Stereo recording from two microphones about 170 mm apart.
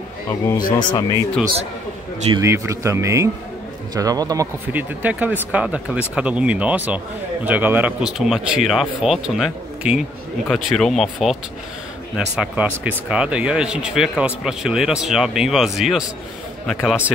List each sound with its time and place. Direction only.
0.3 s speech: 20° left (ahead or behind)
2.3 s a man's voice: 15° right (ahead or behind)
4.7 s speech: 10° right (ahead or behind)
12.4 s speech: 10° right (ahead or behind)